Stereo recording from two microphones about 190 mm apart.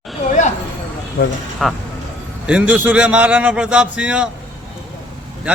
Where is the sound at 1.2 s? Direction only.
60° left (ahead or behind).